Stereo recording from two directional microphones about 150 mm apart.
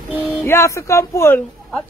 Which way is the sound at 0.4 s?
15° left (ahead or behind).